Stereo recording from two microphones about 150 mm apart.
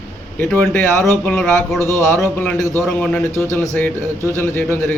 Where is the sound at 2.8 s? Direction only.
5° left (ahead or behind).